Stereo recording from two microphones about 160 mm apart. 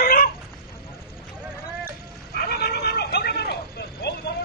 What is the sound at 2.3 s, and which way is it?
Vehicle, 75° left (ahead or behind).